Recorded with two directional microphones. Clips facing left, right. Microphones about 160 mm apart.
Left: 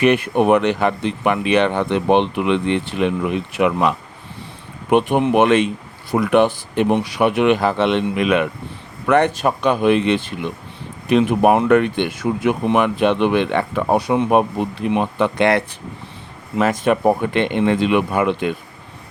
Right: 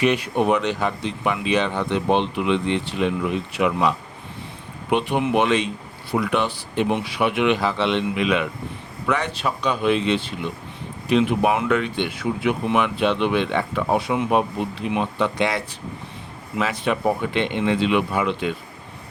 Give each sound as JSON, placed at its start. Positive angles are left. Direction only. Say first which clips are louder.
{"t": 0.0, "sound": "speech", "louder": "left 5 dB", "side_deg": 60}
{"t": 6.9, "sound": "speech", "louder": "left 5 dB", "side_deg": 45}
{"t": 11.7, "sound": "speech", "louder": "left 7 dB", "side_deg": 55}
{"t": 13.9, "sound": "speech", "louder": "left 5 dB", "side_deg": 40}